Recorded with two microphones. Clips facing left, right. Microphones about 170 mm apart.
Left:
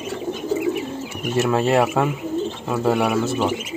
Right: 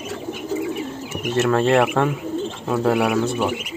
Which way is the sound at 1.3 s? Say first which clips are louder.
Right 1 dB; 10° left (ahead or behind).